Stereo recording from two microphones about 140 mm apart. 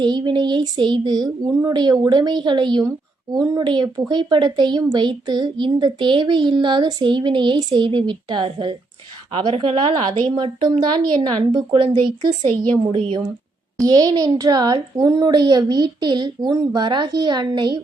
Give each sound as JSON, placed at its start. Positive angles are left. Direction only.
{"t": 0.0, "sound": "a woman's voice", "side_deg": -30}
{"t": 13.8, "sound": "a child's voice", "side_deg": -30}